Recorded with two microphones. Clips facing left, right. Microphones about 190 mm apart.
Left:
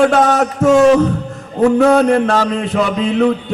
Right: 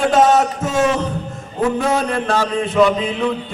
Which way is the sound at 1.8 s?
65° left (ahead or behind).